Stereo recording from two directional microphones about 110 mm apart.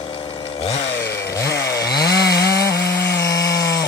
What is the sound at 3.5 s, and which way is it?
Chainsaw, 30° left (ahead or behind).